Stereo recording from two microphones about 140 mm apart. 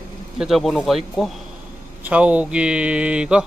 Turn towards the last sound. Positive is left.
turn(degrees=-5)  # may be behind; listen again after turning